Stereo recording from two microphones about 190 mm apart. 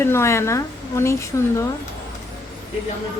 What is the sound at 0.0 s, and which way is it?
A woman's voice, 15° left (ahead or behind).